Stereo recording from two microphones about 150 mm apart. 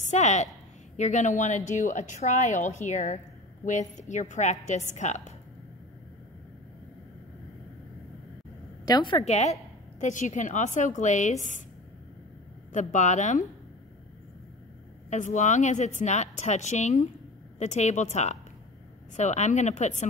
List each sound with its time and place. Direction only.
0.0 s a woman's voice: 50° left (ahead or behind)
8.8 s a woman's voice: 30° left (ahead or behind)
9.2 s a woman's voice: 50° left (ahead or behind)
12.7 s a woman's voice: 55° left (ahead or behind)
15.0 s a woman's voice: 55° left (ahead or behind)